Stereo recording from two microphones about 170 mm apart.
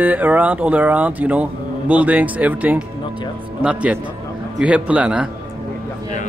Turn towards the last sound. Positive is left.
turn(degrees=-5)  # may be behind; listen again after turning